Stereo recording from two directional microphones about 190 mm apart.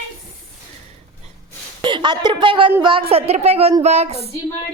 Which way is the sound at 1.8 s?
25° right (ahead or behind).